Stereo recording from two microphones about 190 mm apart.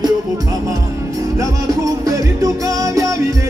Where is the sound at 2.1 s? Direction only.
20° right (ahead or behind).